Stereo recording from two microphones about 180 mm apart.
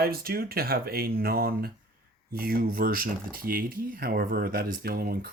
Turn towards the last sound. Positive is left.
turn(degrees=-55)  # may be behind; listen again after turning